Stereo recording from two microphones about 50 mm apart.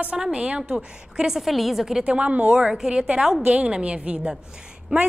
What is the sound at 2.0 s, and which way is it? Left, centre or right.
A woman's voice, right.